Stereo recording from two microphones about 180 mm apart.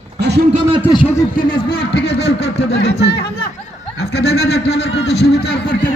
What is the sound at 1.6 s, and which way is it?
Speech, 60° left (ahead or behind).